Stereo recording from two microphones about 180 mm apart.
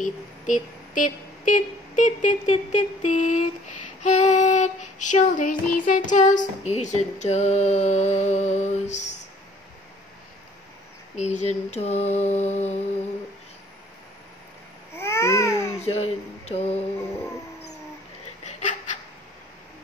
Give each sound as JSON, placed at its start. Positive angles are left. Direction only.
{"t": 0.0, "sound": "speech", "side_deg": 45}
{"t": 4.0, "sound": "child singing", "side_deg": 40}
{"t": 11.1, "sound": "child singing", "side_deg": 40}
{"t": 15.0, "sound": "babbling", "side_deg": 15}
{"t": 15.8, "sound": "speech", "side_deg": 35}
{"t": 18.6, "sound": "laughter", "side_deg": 40}